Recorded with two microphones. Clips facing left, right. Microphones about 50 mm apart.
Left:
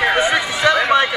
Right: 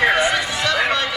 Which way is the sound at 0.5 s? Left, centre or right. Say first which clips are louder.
Left 5 dB; centre.